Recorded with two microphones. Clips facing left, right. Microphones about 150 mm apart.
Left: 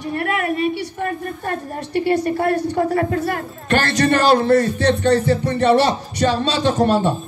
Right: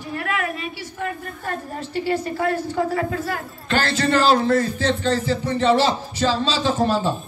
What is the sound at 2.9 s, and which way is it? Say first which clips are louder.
Speech: left 4 dB; 45° left (ahead or behind).